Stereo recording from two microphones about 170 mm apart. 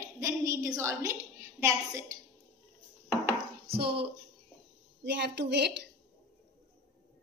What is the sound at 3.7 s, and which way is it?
Speech, 65° right (ahead or behind).